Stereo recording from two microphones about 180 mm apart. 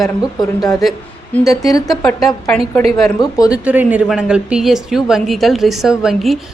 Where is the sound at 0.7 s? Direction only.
Centre (ahead or behind).